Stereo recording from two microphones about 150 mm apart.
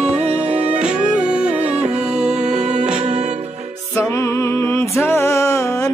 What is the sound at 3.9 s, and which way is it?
Music, 20° left (ahead or behind).